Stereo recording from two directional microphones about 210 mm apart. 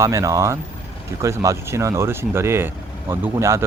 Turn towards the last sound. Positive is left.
turn(degrees=-15)  # may be behind; listen again after turning